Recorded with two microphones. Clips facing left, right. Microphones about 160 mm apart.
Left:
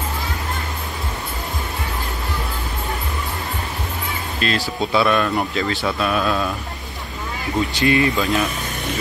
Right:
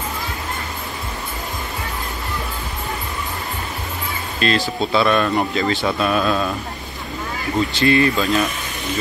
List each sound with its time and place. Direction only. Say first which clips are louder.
4.4 s speech: right 3 dB; 5° left (ahead or behind)
7.8 s speech: right 2 dB; 15° left (ahead or behind)
8.2 s speech: right 1 dB; centre (ahead or behind)